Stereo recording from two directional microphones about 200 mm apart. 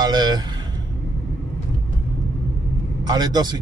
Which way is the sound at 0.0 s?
20° right (ahead or behind).